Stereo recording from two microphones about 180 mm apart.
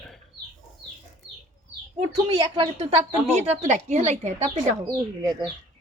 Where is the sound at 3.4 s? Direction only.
40° right (ahead or behind).